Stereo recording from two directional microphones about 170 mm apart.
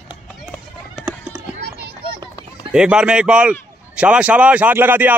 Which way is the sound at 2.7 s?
5° right (ahead or behind).